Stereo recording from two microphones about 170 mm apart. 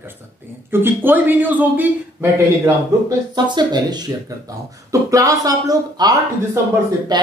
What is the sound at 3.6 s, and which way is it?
Speech, 25° right (ahead or behind).